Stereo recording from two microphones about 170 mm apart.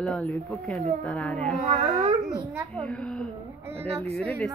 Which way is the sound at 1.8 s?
25° right (ahead or behind).